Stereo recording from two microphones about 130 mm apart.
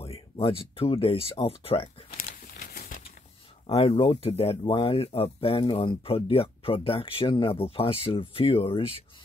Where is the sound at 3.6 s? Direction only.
45° left (ahead or behind).